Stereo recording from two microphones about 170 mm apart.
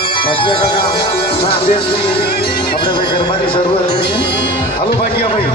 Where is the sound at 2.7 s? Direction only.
25° left (ahead or behind).